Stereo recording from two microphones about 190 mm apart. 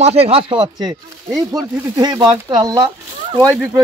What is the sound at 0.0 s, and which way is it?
Speech, 35° right (ahead or behind).